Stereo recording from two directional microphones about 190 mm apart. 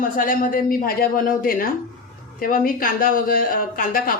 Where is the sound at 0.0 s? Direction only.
45° left (ahead or behind).